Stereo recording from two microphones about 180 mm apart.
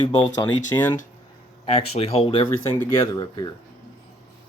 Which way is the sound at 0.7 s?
20° left (ahead or behind).